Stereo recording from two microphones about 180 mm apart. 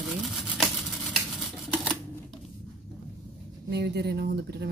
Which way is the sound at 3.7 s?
70° right (ahead or behind).